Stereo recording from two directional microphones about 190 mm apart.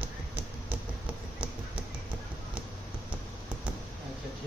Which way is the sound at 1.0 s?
10° right (ahead or behind).